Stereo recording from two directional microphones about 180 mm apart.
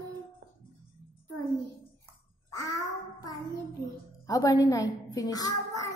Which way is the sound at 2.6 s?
20° left (ahead or behind).